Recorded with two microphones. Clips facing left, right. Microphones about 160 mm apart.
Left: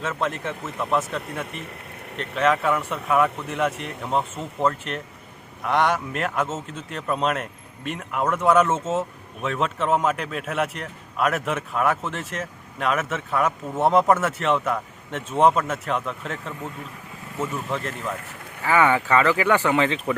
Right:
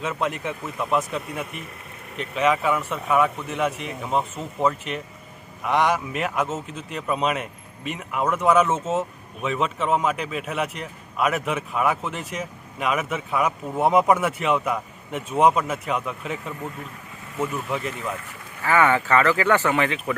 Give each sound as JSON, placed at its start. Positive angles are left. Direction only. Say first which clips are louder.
{"t": 0.0, "sound": "speech", "louder": "even", "side_deg": -10}
{"t": 18.6, "sound": "speech", "louder": "even", "side_deg": 15}